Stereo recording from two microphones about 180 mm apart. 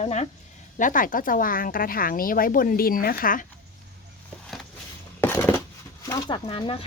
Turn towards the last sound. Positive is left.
turn(degrees=25)  # may be behind; listen again after turning